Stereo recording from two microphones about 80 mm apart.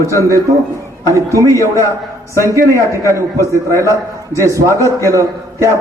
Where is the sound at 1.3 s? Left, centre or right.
Right.